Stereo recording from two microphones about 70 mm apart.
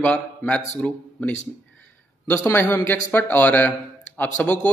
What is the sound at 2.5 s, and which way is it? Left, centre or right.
A man's voice, left.